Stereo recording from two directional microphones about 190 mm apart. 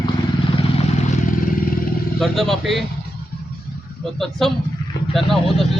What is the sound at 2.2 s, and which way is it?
Speech, centre (ahead or behind).